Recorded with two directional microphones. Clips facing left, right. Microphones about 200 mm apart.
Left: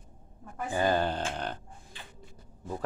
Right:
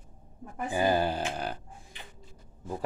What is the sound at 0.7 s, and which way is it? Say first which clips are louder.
Grunt: right 1 dB; 10° right (ahead or behind).